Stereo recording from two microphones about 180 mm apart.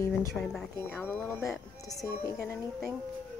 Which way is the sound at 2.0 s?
20° left (ahead or behind).